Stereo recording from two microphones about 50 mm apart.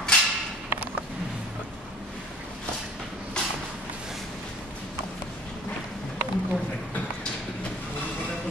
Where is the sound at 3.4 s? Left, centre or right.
Centre.